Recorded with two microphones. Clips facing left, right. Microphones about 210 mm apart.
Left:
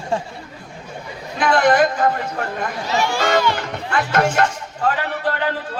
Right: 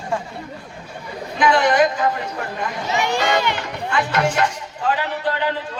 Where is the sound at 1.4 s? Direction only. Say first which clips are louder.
Left 1 dB; 50° left (ahead or behind).